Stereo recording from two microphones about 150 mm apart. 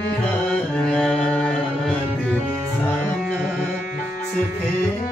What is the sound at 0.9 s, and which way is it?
Mantra, 5° left (ahead or behind).